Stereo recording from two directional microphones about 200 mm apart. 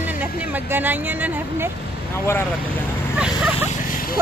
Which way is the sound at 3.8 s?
45° left (ahead or behind).